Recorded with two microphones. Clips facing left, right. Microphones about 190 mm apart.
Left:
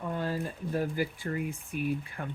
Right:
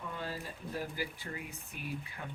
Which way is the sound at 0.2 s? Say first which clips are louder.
Left 8 dB; 50° left (ahead or behind).